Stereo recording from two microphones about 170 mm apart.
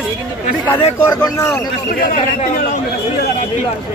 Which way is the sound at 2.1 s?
50° left (ahead or behind).